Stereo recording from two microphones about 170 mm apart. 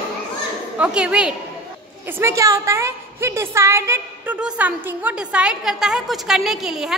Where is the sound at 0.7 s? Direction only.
5° right (ahead or behind).